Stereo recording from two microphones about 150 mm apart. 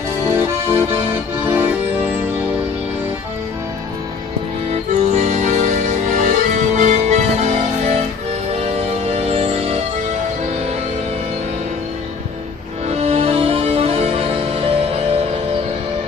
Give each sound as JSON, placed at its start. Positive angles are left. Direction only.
{"t": 0.3, "sound": "accordion", "side_deg": -15}
{"t": 5.1, "sound": "music", "side_deg": -50}
{"t": 12.8, "sound": "music", "side_deg": -45}